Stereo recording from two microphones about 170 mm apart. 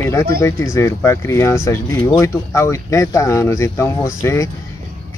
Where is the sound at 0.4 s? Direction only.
15° left (ahead or behind).